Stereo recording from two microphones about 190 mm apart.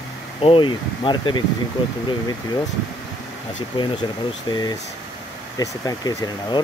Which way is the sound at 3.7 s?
25° left (ahead or behind).